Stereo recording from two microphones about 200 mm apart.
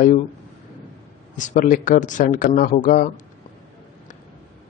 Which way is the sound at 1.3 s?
40° left (ahead or behind).